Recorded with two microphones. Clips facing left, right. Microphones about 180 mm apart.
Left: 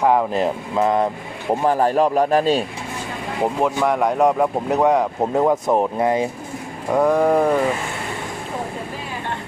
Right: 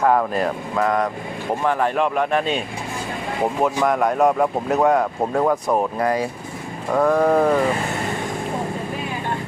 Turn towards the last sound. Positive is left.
turn(degrees=5)  # may be behind; listen again after turning